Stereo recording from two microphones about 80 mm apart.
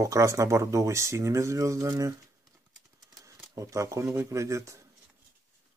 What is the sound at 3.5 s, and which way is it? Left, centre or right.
Speech, right.